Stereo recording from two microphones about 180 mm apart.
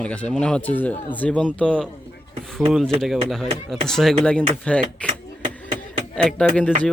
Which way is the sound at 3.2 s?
Centre (ahead or behind).